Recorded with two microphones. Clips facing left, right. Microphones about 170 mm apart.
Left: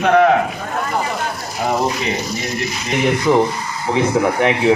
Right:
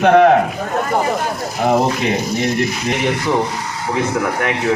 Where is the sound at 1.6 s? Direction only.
50° right (ahead or behind).